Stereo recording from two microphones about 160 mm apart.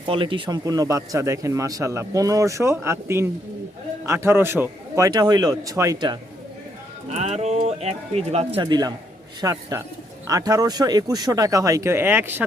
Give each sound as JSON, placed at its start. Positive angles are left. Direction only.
{"t": 0.0, "sound": "speech", "side_deg": -30}
{"t": 7.1, "sound": "speech", "side_deg": -45}